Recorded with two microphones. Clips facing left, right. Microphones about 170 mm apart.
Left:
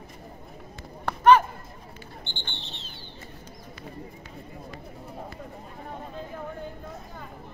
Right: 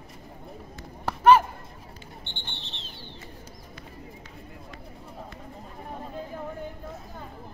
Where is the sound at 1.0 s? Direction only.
5° right (ahead or behind).